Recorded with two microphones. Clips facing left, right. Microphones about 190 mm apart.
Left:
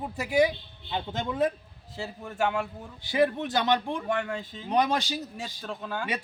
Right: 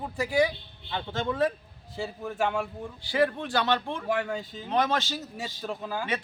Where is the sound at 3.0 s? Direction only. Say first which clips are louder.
Left 1 dB; 20° left (ahead or behind).